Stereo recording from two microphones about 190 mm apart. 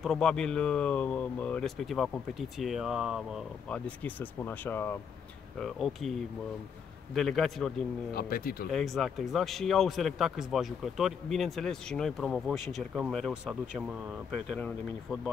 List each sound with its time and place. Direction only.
0.0 s speech: centre (ahead or behind)
5.6 s speech: centre (ahead or behind)
7.2 s speech: centre (ahead or behind)
8.1 s speech: 50° left (ahead or behind)
8.7 s speech: centre (ahead or behind)